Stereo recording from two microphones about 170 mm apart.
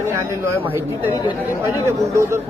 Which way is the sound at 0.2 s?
15° right (ahead or behind).